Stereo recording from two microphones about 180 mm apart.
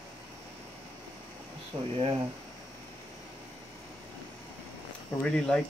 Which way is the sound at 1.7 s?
30° right (ahead or behind).